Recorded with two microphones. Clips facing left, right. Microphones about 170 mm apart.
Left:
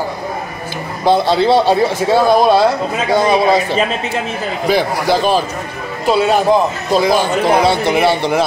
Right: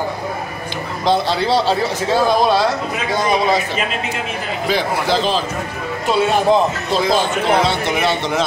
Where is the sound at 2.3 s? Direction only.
50° left (ahead or behind).